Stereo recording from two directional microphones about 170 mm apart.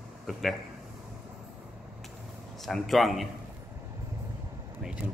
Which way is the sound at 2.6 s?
Centre (ahead or behind).